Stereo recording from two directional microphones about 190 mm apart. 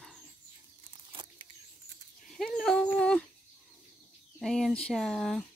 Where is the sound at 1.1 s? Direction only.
25° right (ahead or behind).